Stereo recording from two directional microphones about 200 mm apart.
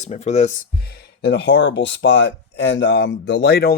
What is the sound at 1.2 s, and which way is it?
Speech, 55° left (ahead or behind).